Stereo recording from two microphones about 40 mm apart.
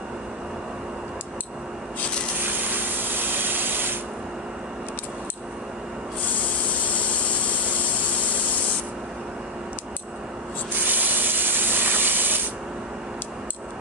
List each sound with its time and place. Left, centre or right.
2.7 s spray: right
10.9 s steam: right